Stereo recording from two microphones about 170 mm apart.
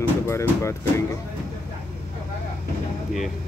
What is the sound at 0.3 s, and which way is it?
Speech, 15° left (ahead or behind).